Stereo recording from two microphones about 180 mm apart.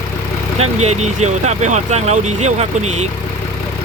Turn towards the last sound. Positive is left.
turn(degrees=-40)  # may be behind; listen again after turning